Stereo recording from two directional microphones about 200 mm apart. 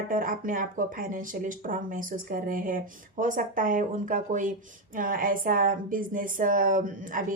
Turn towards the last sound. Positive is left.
turn(degrees=-40)  # may be behind; listen again after turning